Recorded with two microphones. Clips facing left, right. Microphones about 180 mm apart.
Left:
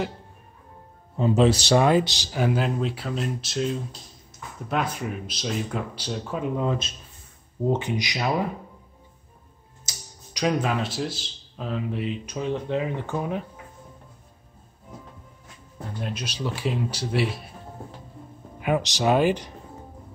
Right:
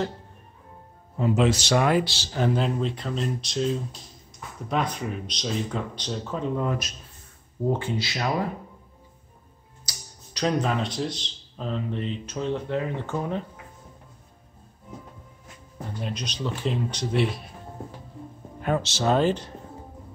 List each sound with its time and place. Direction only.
1.1 s speech: 30° left (ahead or behind)
9.9 s a sound: 25° left (ahead or behind)
10.3 s speech: 10° left (ahead or behind)
16.0 s speech: 5° left (ahead or behind)
18.6 s speech: 15° left (ahead or behind)